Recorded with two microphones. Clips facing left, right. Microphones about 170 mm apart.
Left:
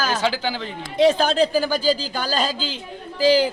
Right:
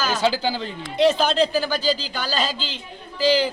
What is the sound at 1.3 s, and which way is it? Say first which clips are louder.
Speech: left 2 dB; 10° left (ahead or behind).